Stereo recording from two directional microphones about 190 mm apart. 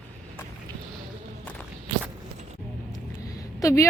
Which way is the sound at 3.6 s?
15° left (ahead or behind).